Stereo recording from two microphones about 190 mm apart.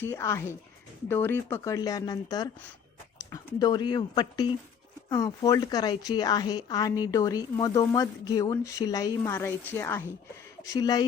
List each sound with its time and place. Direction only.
0.0 s a woman's voice: 15° left (ahead or behind)